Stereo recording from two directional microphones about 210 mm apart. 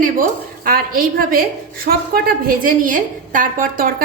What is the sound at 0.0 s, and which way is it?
A woman's voice, 40° right (ahead or behind).